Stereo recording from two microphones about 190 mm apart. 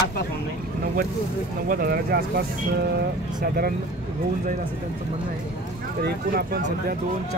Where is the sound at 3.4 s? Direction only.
50° right (ahead or behind).